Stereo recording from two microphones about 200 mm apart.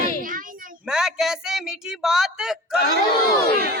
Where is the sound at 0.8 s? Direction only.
5° right (ahead or behind).